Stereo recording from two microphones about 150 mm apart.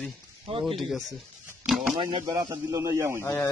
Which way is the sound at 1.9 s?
30° right (ahead or behind).